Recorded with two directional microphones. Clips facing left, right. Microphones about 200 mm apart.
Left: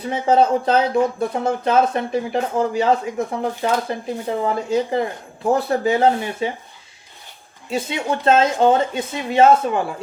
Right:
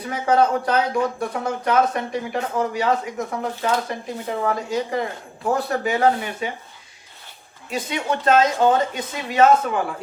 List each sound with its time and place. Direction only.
0.1 s speech: 25° left (ahead or behind)
7.7 s speech: 25° left (ahead or behind)